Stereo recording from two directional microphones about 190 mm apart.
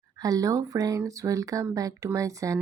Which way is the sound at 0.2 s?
20° right (ahead or behind).